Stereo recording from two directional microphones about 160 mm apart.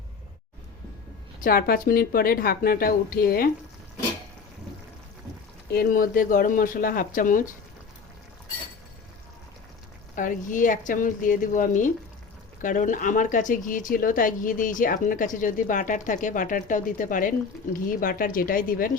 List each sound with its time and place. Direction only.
1.4 s speech: 65° left (ahead or behind)
5.7 s speech: 70° left (ahead or behind)
10.2 s speech: 55° left (ahead or behind)